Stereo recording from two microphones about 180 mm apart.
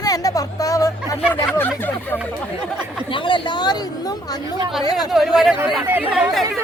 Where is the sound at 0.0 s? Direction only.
20° left (ahead or behind).